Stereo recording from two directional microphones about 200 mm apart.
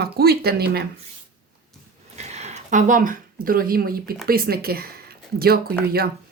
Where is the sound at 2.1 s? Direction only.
35° right (ahead or behind); by 5.6 s 50° right (ahead or behind).